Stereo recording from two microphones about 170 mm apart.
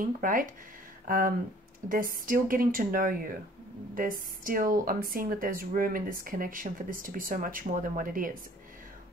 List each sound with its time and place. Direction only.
0.0 s speech: 55° right (ahead or behind)